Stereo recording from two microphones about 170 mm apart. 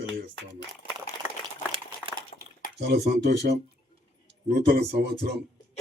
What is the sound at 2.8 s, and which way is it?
Speech, 80° right.